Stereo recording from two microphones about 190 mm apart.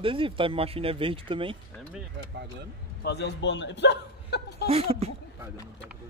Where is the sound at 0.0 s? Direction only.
25° right (ahead or behind).